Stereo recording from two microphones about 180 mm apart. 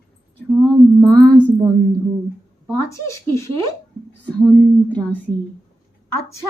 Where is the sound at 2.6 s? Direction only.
15° left (ahead or behind).